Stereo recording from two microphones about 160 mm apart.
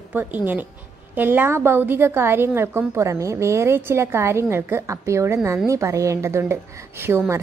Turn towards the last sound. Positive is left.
turn(degrees=-15)  # may be behind; listen again after turning